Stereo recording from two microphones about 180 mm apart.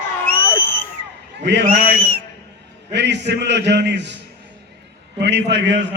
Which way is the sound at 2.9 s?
70° right (ahead or behind).